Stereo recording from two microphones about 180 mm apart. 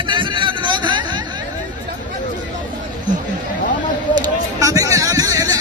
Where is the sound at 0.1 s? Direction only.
25° right (ahead or behind).